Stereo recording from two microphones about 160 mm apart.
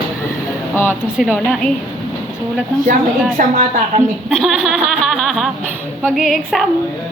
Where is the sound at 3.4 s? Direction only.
55° right (ahead or behind).